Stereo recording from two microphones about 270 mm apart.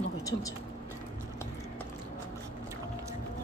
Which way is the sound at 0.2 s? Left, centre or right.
Centre.